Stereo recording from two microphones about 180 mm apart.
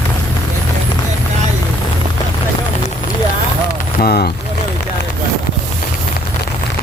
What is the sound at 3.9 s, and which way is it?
Speech, 55° left (ahead or behind).